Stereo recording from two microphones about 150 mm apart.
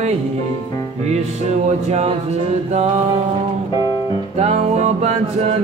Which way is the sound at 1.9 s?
50° right (ahead or behind).